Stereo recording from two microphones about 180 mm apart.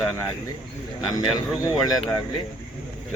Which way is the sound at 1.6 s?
20° left (ahead or behind).